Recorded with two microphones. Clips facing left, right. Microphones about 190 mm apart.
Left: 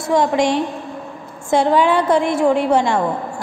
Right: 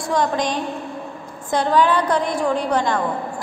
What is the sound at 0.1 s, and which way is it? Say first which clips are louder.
A woman's voice: left 5 dB; 25° left (ahead or behind).